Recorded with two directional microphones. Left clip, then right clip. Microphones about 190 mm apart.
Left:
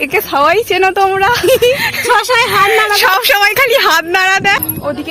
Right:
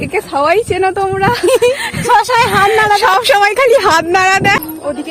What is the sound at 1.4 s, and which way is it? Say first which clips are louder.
Speech: right 1 dB; 60° right (ahead or behind).